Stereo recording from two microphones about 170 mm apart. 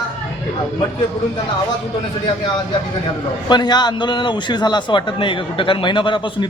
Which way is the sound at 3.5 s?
25° left (ahead or behind).